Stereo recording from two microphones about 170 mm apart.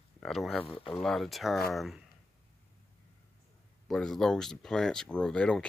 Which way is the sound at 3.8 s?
Centre (ahead or behind).